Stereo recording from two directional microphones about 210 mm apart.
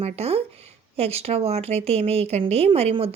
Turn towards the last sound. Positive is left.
turn(degrees=-30)  # may be behind; listen again after turning